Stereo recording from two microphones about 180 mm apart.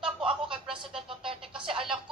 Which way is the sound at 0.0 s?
30° right (ahead or behind).